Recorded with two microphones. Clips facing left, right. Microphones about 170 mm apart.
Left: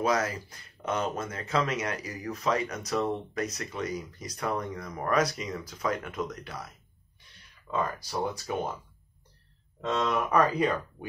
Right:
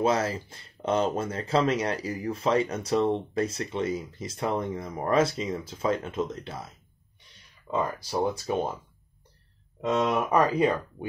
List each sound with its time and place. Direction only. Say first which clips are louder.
0.0 s speech: right 3 dB; 25° right (ahead or behind)
9.8 s speech: right 4 dB; 15° right (ahead or behind)
10.0 s speech: even; 25° right (ahead or behind)